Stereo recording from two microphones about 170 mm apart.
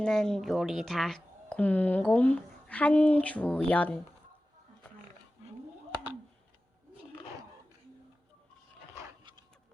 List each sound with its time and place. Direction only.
0.0 s speech: 5° left (ahead or behind)